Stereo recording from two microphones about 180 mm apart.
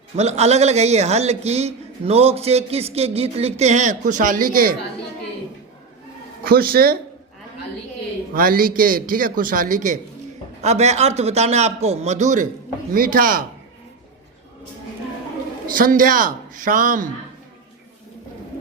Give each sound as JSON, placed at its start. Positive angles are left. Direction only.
{"t": 0.2, "sound": "a man's voice", "side_deg": -35}
{"t": 6.4, "sound": "speech", "side_deg": -55}
{"t": 8.3, "sound": "a man's voice", "side_deg": -50}
{"t": 15.6, "sound": "a man's voice", "side_deg": -50}